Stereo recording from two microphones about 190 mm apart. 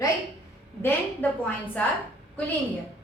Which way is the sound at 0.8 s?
10° left (ahead or behind).